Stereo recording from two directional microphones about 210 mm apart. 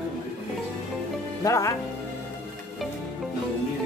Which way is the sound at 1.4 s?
15° left (ahead or behind).